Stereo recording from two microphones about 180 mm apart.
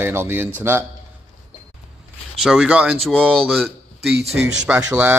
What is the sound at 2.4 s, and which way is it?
A man's voice, 5° right (ahead or behind).